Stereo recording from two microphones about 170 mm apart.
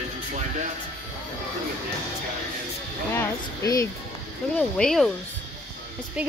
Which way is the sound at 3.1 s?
15° left (ahead or behind).